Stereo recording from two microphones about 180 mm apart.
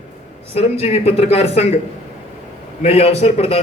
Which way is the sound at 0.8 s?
35° left (ahead or behind).